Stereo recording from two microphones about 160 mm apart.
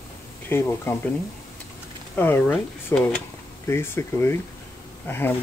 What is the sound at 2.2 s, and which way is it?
Speech, 15° left (ahead or behind).